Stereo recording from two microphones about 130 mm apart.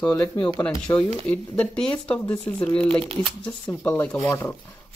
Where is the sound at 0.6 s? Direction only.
5° left (ahead or behind).